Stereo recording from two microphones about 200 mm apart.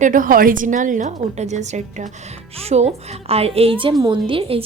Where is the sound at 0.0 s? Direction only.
40° right (ahead or behind).